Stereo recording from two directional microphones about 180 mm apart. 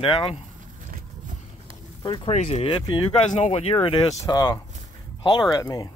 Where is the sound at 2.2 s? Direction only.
40° left (ahead or behind).